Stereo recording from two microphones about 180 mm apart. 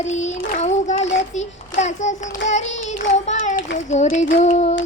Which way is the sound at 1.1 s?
40° left (ahead or behind).